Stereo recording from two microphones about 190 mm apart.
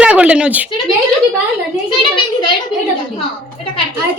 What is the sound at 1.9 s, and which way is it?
Speech, 25° left (ahead or behind).